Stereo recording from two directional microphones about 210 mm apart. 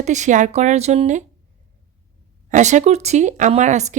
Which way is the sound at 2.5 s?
35° right (ahead or behind).